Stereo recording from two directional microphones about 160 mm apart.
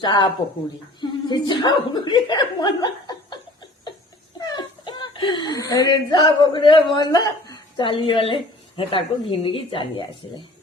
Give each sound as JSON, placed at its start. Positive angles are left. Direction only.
{"t": 0.0, "sound": "speech", "side_deg": 25}
{"t": 4.4, "sound": "a woman's voice", "side_deg": 25}